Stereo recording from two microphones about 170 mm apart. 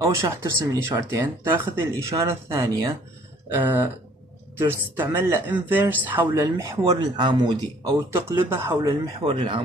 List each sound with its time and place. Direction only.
0.0 s speech: 20° right (ahead or behind)
9.2 s speech: 30° right (ahead or behind)